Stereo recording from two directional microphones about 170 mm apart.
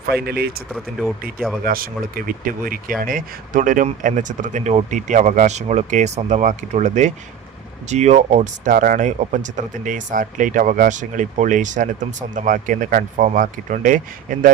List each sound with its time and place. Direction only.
0.1 s speech: 65° right (ahead or behind)
0.7 s speech: centre (ahead or behind)
1.6 s speech: 60° right (ahead or behind)